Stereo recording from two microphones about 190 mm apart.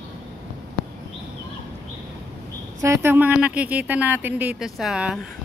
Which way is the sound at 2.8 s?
15° right (ahead or behind).